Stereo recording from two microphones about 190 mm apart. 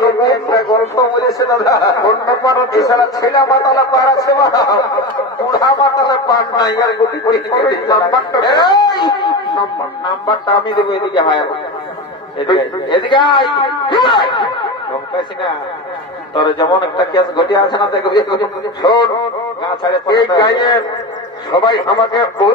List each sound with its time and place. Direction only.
0.0 s a sound: 20° left (ahead or behind)
1.9 s speech: 20° left (ahead or behind)
16.3 s speech: 25° left (ahead or behind)